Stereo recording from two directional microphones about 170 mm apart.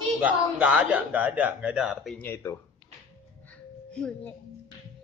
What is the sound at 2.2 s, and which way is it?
Speech, 15° left (ahead or behind).